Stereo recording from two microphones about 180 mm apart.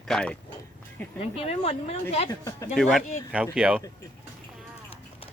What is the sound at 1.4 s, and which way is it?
Speech, 35° left (ahead or behind).